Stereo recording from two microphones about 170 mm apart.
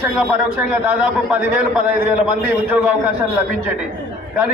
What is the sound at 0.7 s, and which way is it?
A man's voice, 10° right (ahead or behind).